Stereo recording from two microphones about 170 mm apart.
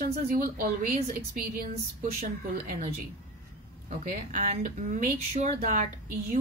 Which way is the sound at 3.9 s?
45° right (ahead or behind).